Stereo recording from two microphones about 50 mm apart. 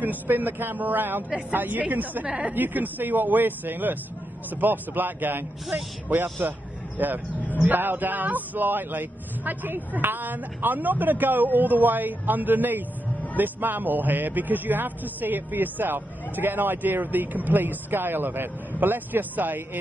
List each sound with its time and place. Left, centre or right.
0.0 s a man's voice: right
6.4 s a man's voice: right